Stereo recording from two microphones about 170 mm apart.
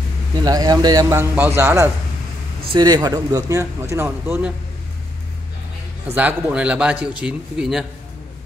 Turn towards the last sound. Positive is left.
turn(degrees=-5)  # may be behind; listen again after turning